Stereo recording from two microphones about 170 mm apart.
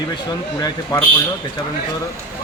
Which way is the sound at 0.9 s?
20° left (ahead or behind).